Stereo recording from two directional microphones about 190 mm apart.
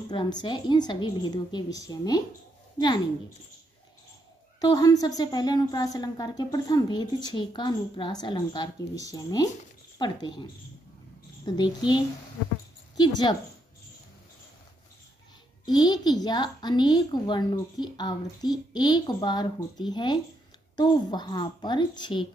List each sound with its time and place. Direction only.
0.1 s a woman's voice: 25° left (ahead or behind)
4.6 s a woman's voice: 20° left (ahead or behind)
15.6 s a woman's voice: 20° left (ahead or behind)